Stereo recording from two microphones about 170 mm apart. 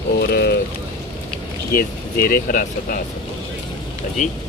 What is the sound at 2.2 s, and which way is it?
Speech, 55° left (ahead or behind).